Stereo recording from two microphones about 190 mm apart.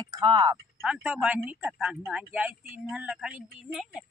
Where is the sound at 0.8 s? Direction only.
5° right (ahead or behind).